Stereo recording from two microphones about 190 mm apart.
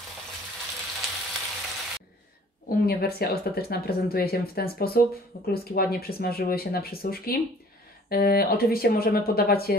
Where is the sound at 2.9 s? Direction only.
55° left (ahead or behind).